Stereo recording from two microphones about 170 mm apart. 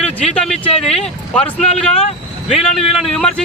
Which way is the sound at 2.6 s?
Centre (ahead or behind).